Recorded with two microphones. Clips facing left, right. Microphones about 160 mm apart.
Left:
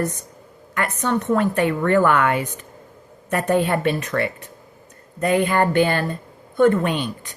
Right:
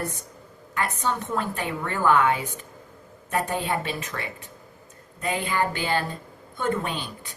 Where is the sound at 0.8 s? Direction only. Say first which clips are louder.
Left 5 dB; 65° left (ahead or behind).